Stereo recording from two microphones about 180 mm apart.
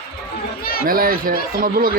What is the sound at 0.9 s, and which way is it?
Speech, 55° right (ahead or behind).